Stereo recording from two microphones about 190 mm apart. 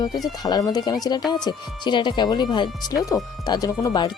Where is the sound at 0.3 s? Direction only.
20° left (ahead or behind).